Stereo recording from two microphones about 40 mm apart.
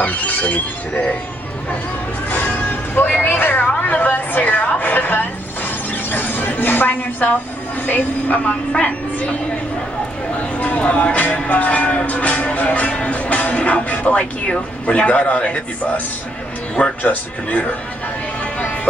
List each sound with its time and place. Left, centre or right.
0.1 s speech: left
2.9 s vehicle: left
3.2 s a sound: left
7.8 s speech: left
17.0 s speech: left
18.4 s music: left